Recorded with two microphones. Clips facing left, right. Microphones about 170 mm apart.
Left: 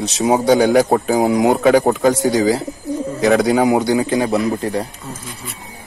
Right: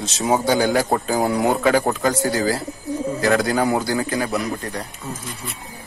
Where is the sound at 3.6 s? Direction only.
20° left (ahead or behind).